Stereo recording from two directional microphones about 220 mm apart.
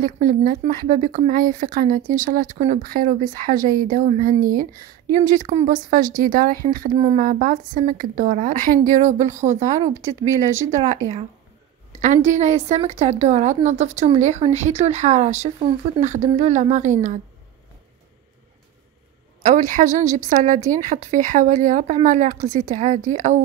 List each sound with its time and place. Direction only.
0.0 s a woman's voice: 40° right (ahead or behind)
12.0 s a woman's voice: 35° right (ahead or behind)
19.4 s a woman's voice: 35° right (ahead or behind)